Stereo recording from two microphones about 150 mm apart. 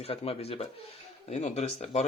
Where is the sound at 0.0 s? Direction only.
40° left (ahead or behind).